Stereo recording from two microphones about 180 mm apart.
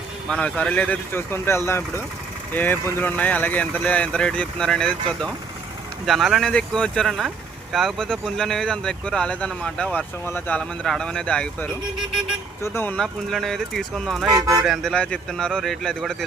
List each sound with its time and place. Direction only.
0.3 s speech: 5° left (ahead or behind)
14.3 s speech: 20° right (ahead or behind)
14.6 s speech: centre (ahead or behind)